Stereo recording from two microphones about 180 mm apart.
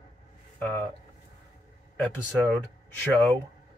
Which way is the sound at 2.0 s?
5° left (ahead or behind).